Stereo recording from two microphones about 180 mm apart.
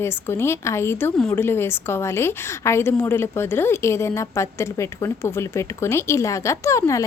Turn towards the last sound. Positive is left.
turn(degrees=15)  # may be behind; listen again after turning